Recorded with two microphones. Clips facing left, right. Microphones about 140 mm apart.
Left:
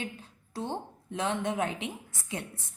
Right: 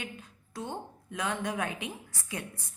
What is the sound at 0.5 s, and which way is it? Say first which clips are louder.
A woman's voice: left 3 dB; 30° left (ahead or behind).